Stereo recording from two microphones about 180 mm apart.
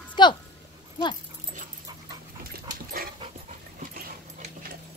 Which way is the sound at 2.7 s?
55° right (ahead or behind).